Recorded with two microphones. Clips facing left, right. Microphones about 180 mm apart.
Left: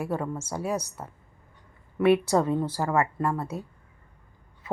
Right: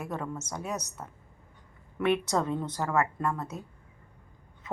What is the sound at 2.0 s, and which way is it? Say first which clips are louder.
Speech: left 6 dB; 5° left (ahead or behind).